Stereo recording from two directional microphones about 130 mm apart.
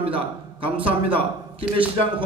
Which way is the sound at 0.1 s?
45° right (ahead or behind).